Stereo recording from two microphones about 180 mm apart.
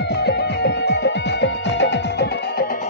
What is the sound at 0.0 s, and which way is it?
Music, 65° left (ahead or behind).